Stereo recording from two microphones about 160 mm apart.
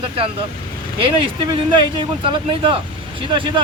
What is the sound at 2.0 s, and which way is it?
A man's voice, 30° right (ahead or behind).